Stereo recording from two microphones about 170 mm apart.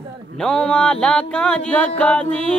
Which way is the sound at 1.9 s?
5° left (ahead or behind).